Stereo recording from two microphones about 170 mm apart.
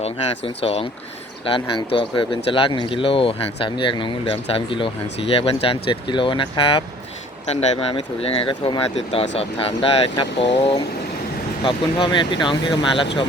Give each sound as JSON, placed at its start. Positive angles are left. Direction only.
{"t": 0.0, "sound": "speech", "side_deg": 35}